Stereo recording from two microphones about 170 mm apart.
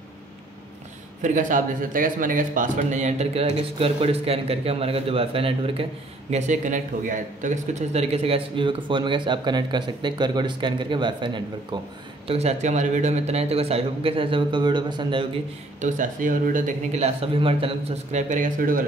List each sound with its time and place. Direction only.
1.2 s speech: 50° right (ahead or behind); by 5.9 s 35° right (ahead or behind)
6.3 s a man's voice: 45° right (ahead or behind); by 11.9 s 25° right (ahead or behind)
12.3 s speech: 40° right (ahead or behind)
15.8 s speech: 50° right (ahead or behind)